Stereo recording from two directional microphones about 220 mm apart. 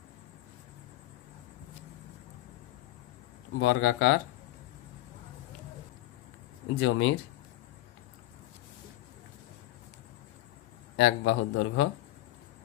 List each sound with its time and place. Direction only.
3.6 s a man's voice: 60° left (ahead or behind)
6.7 s a man's voice: 65° left (ahead or behind)
10.9 s a man's voice: 60° left (ahead or behind)